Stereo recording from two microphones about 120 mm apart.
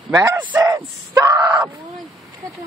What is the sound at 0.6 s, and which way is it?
Screaming, 25° right (ahead or behind).